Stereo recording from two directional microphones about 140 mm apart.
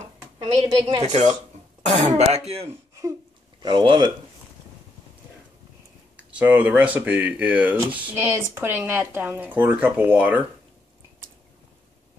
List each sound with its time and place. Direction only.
0.7 s a woman's voice: 25° right (ahead or behind)
1.0 s speech: 55° right (ahead or behind)
3.6 s speech: 35° right (ahead or behind)
6.1 s speech: 10° right (ahead or behind)